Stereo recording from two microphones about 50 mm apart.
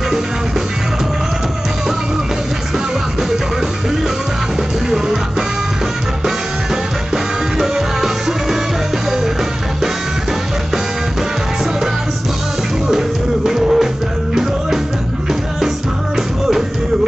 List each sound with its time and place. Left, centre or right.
7.5 s music: centre
13.5 s music: centre
16.2 s music: centre